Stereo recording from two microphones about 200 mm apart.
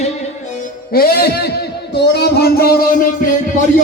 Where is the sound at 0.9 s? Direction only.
50° left (ahead or behind).